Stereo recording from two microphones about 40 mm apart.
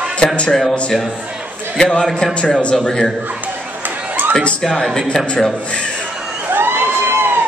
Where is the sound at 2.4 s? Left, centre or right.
Left.